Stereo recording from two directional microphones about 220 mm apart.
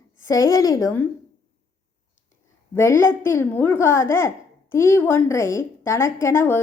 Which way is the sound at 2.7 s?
10° left (ahead or behind).